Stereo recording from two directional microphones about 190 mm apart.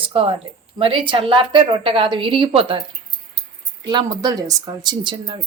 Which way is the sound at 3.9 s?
20° right (ahead or behind).